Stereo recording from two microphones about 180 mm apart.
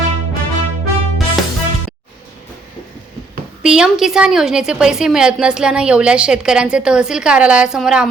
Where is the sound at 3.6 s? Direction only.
5° right (ahead or behind).